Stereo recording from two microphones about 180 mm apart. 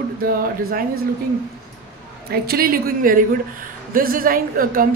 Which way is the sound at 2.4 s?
55° right (ahead or behind).